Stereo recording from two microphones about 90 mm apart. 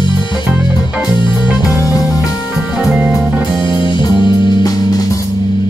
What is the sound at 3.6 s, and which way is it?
Music, 60° left (ahead or behind).